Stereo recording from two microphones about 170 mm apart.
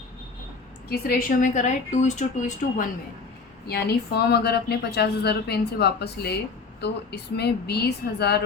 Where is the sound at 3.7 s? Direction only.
70° left (ahead or behind).